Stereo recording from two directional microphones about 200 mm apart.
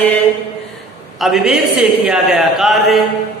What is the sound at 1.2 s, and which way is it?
A man's voice, centre (ahead or behind).